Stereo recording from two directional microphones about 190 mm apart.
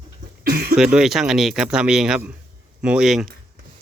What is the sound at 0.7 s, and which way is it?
Speech, 5° right (ahead or behind).